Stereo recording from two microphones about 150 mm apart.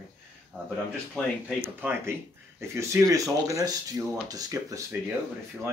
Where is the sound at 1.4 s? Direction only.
15° right (ahead or behind).